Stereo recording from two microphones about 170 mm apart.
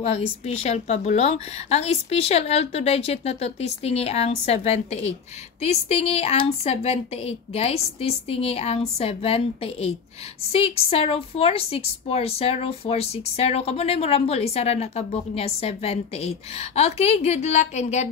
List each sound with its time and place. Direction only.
0.0 s a woman's voice: 40° left (ahead or behind)